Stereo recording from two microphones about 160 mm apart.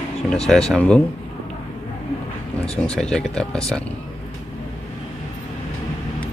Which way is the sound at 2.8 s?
5° left (ahead or behind).